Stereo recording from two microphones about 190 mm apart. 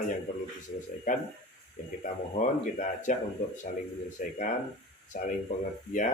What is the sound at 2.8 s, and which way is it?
Speech, 40° left (ahead or behind).